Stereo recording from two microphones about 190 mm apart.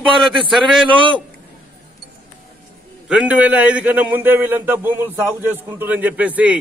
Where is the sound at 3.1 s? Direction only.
5° right (ahead or behind).